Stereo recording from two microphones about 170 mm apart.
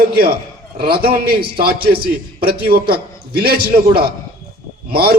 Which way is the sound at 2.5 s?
65° right (ahead or behind).